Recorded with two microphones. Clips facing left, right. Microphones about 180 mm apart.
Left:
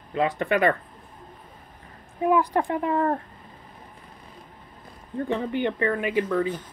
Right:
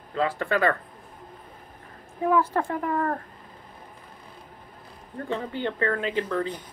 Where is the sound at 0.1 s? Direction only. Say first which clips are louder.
Left 2 dB; 20° left (ahead or behind).